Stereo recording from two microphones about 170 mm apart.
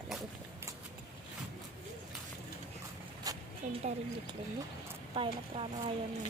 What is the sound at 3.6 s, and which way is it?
Speech, 40° right (ahead or behind).